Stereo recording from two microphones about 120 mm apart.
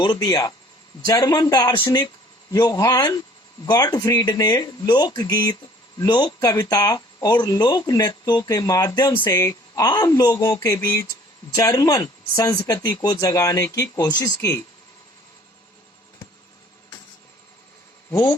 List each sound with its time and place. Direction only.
0.0 s speech: 30° left (ahead or behind)
2.7 s speech: 30° left (ahead or behind)
18.1 s speech: 20° left (ahead or behind)